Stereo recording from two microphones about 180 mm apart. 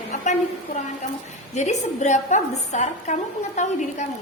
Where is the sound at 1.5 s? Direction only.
40° left (ahead or behind).